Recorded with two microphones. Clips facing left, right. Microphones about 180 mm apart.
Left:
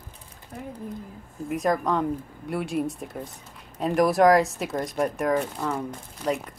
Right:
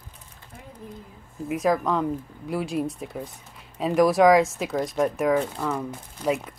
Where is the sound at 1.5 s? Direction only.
Centre (ahead or behind).